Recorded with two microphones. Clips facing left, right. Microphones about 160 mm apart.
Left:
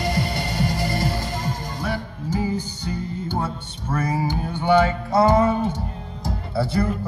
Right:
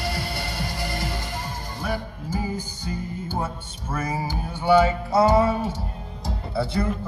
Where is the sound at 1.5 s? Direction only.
10° right (ahead or behind).